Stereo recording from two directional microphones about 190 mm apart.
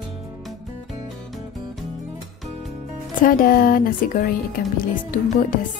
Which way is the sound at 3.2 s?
50° left (ahead or behind).